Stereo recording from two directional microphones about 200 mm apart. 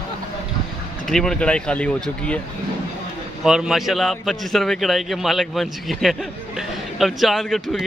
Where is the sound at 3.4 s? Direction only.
Centre (ahead or behind).